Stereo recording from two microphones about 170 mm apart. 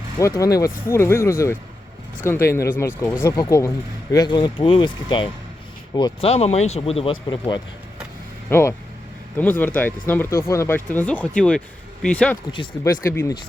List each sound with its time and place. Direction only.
0.2 s speech: 20° left (ahead or behind)
8.4 s speech: 15° left (ahead or behind)